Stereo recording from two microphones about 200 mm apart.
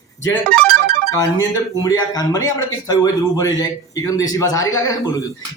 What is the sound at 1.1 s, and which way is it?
Speech, 20° left (ahead or behind).